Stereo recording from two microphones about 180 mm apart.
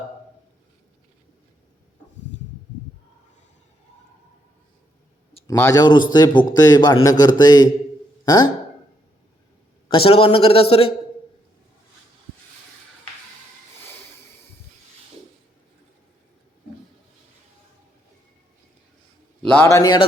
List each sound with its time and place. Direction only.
5.5 s a man's voice: 20° left (ahead or behind)
9.9 s a man's voice: 30° left (ahead or behind)
19.5 s a man's voice: 15° left (ahead or behind)